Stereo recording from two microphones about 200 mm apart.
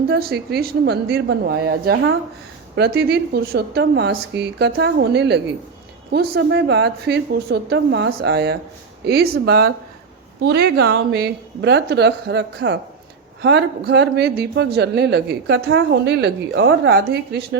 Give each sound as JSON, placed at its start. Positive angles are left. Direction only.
{"t": 0.1, "sound": "a woman's voice", "side_deg": -50}